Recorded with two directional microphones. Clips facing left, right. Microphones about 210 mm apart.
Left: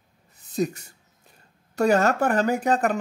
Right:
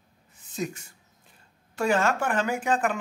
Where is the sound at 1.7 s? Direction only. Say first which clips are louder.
Left 4 dB; 40° left (ahead or behind).